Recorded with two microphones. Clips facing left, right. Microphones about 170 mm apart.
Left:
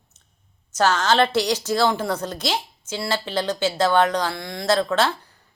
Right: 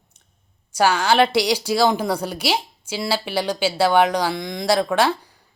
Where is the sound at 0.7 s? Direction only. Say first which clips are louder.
Right 2 dB; 10° right (ahead or behind).